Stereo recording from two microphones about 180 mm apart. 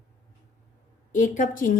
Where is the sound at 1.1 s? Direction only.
45° left (ahead or behind).